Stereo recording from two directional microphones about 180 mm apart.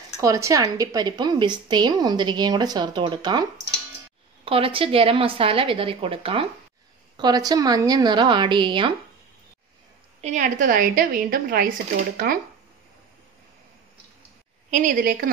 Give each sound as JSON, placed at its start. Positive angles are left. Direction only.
{"t": 0.2, "sound": "a woman's voice", "side_deg": -20}
{"t": 4.5, "sound": "a woman's voice", "side_deg": -30}
{"t": 10.2, "sound": "a woman's voice", "side_deg": -45}
{"t": 14.7, "sound": "a woman's voice", "side_deg": -45}